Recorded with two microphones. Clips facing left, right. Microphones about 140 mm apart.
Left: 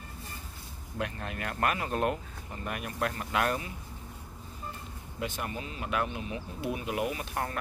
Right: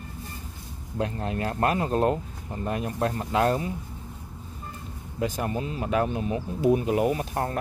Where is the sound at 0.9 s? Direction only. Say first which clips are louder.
Right 7 dB; 30° right (ahead or behind).